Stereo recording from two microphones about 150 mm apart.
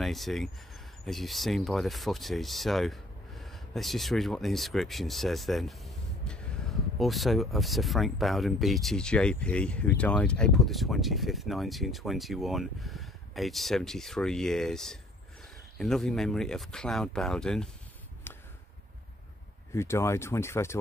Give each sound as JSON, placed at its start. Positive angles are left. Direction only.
{"t": 0.0, "sound": "speech", "side_deg": 0}
{"t": 19.7, "sound": "speech", "side_deg": 20}